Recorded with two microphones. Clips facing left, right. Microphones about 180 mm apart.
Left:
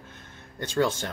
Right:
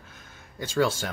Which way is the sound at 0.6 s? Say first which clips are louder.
Even; 5° right (ahead or behind).